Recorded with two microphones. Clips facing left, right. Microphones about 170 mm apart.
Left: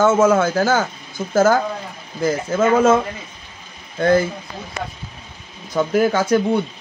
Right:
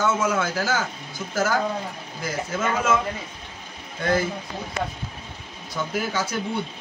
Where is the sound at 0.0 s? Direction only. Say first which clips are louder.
Left 9 dB; 50° left (ahead or behind).